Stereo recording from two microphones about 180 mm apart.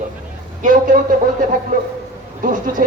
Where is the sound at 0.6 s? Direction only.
45° right (ahead or behind).